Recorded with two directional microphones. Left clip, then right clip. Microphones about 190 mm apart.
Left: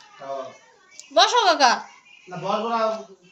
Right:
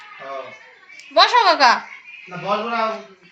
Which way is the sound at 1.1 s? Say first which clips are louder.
Right 4 dB; 10° left (ahead or behind).